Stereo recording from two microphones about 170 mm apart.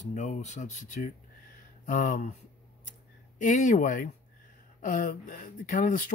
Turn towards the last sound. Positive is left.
turn(degrees=50)  # may be behind; listen again after turning